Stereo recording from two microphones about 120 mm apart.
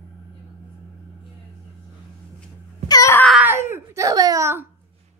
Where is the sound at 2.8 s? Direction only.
30° left (ahead or behind).